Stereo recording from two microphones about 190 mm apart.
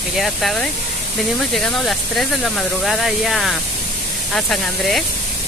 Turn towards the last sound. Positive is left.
turn(degrees=0)  # may be behind; listen again after turning